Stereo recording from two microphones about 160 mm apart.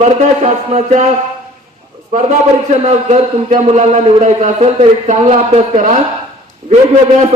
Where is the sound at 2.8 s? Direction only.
45° right (ahead or behind).